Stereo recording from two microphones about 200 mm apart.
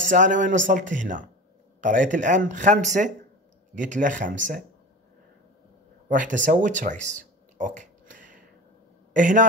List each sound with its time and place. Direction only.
0.1 s speech: 40° right (ahead or behind)
6.0 s a sound: 40° right (ahead or behind)
9.1 s speech: 40° right (ahead or behind)